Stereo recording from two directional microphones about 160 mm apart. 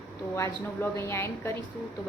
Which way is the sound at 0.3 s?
15° left (ahead or behind).